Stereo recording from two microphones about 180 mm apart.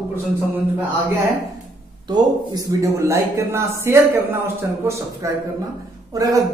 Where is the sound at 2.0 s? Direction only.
20° right (ahead or behind).